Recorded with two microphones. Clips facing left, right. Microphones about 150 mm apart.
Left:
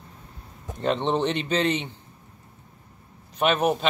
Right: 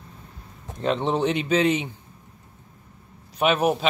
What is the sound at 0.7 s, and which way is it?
Speech, centre (ahead or behind).